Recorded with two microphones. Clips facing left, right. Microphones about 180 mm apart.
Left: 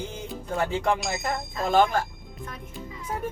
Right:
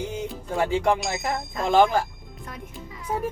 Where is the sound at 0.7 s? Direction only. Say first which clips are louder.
Right 3 dB; centre (ahead or behind).